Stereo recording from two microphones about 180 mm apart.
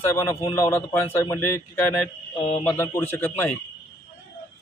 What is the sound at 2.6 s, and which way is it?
Speech, 15° left (ahead or behind).